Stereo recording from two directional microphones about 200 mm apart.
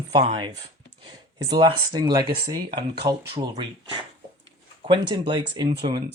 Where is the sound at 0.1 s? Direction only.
30° right (ahead or behind).